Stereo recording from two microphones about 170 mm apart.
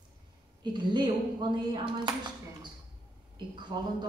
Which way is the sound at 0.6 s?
25° right (ahead or behind).